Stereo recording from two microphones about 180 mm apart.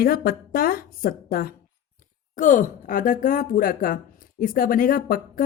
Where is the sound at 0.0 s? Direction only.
55° left (ahead or behind).